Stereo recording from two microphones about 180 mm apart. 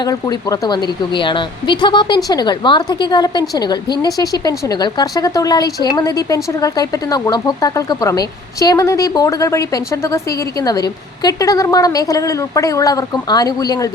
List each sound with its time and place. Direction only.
0.0 s speech: 20° left (ahead or behind)